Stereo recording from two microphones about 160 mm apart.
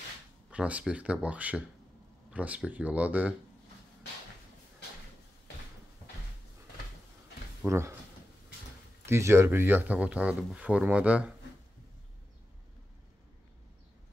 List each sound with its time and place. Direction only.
0.5 s speech: 10° right (ahead or behind)
7.6 s speech: 15° right (ahead or behind)
9.0 s speech: 15° right (ahead or behind)